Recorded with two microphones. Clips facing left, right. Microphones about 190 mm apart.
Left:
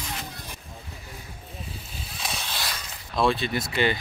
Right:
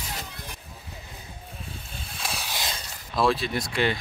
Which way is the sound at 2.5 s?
20° right (ahead or behind).